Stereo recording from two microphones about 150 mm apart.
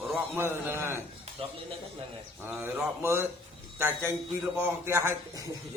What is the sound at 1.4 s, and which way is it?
Speech, 40° right (ahead or behind).